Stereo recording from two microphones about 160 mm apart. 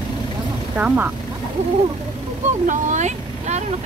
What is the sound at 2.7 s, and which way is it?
Vehicle, 50° right (ahead or behind).